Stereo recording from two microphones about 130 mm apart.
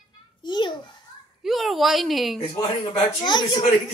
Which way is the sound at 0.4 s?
35° left (ahead or behind).